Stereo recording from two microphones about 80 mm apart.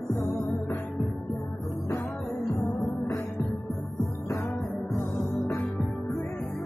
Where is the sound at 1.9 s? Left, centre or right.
Left.